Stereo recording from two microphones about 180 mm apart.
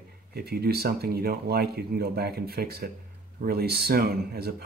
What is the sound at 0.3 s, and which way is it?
Speech, 60° right (ahead or behind).